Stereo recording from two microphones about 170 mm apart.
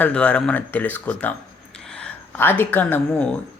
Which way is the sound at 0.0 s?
5° left (ahead or behind).